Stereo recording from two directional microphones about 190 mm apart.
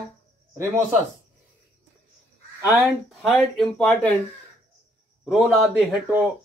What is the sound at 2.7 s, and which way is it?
Speech, 10° right (ahead or behind).